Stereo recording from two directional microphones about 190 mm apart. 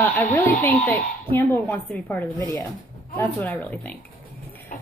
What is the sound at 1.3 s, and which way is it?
A woman's voice, 10° left (ahead or behind).